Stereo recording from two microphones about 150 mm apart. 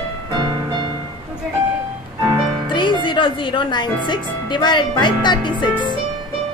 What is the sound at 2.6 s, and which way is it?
Speech, 30° left (ahead or behind).